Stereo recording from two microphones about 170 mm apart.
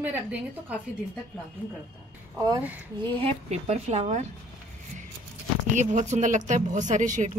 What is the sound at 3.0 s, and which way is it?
A woman's voice, 35° right (ahead or behind).